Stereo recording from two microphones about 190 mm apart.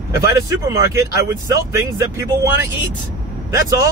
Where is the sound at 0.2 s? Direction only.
15° right (ahead or behind).